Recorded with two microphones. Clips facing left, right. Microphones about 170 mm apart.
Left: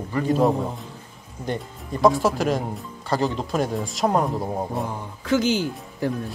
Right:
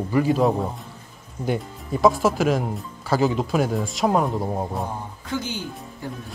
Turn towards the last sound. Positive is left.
turn(degrees=90)